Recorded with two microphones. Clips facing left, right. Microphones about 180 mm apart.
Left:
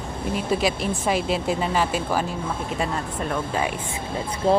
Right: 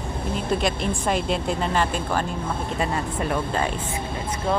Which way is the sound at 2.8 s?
5° right (ahead or behind).